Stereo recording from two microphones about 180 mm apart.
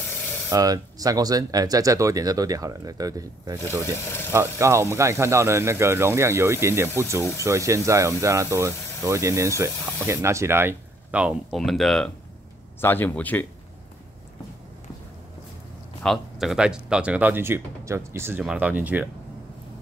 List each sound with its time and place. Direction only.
0.5 s speech: 20° right (ahead or behind)
4.0 s speech: 15° left (ahead or behind)
4.3 s speech: 15° right (ahead or behind); by 13.5 s 10° left (ahead or behind)
16.0 s speech: centre (ahead or behind)